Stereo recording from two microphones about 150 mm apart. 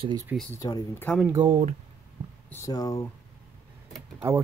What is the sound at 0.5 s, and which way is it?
Speech, 20° left (ahead or behind).